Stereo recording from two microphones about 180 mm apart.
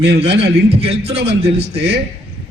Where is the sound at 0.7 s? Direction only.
35° right (ahead or behind).